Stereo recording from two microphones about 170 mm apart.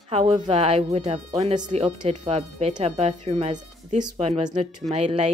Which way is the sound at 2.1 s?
40° right (ahead or behind).